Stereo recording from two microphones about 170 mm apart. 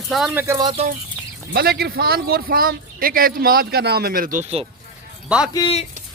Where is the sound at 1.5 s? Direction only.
65° right (ahead or behind).